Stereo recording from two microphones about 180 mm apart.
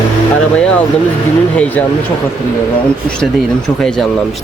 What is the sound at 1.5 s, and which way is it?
Speech, 10° left (ahead or behind).